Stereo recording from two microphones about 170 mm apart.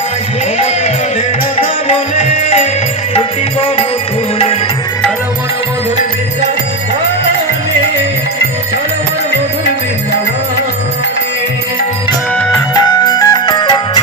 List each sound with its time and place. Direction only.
1.5 s music: 40° left (ahead or behind)
12.4 s music: centre (ahead or behind)
12.7 s music: 25° left (ahead or behind)